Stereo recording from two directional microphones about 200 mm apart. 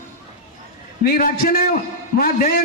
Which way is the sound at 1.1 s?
45° left (ahead or behind).